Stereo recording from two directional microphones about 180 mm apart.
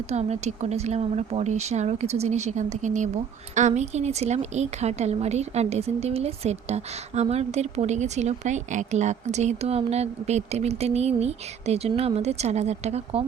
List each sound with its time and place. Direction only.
0.1 s speech: 40° right (ahead or behind)